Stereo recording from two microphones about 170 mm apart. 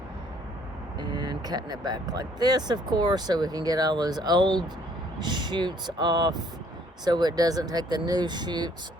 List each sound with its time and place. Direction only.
0.9 s speech: 25° right (ahead or behind)